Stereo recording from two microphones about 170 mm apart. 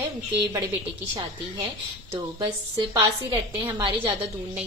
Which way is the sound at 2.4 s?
20° right (ahead or behind).